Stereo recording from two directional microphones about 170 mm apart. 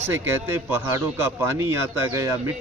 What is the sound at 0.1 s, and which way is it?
A man's voice, 15° right (ahead or behind).